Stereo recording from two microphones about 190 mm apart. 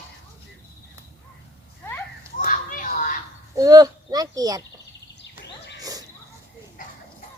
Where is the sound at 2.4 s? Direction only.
45° left (ahead or behind).